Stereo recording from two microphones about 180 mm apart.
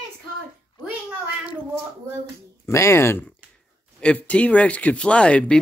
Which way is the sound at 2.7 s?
15° left (ahead or behind).